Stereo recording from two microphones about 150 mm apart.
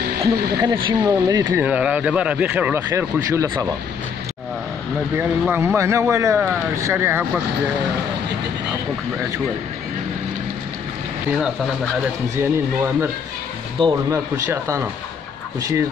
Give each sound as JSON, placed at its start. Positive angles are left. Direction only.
{"t": 0.2, "sound": "speech", "side_deg": -25}
{"t": 1.5, "sound": "speech", "side_deg": -10}
{"t": 5.5, "sound": "speech", "side_deg": -15}
{"t": 12.4, "sound": "speech", "side_deg": -15}
{"t": 13.7, "sound": "speech", "side_deg": -25}